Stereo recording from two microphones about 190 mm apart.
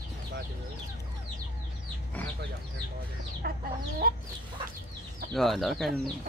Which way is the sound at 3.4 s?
55° right (ahead or behind).